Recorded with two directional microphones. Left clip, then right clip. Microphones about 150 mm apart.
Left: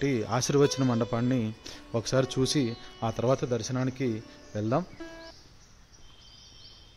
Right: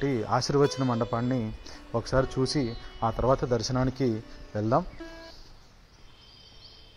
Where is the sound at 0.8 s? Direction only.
40° left (ahead or behind).